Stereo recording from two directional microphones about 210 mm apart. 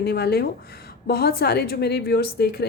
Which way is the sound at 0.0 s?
50° left (ahead or behind).